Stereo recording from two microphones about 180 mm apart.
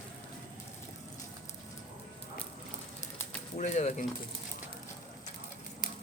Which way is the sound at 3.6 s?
40° left (ahead or behind).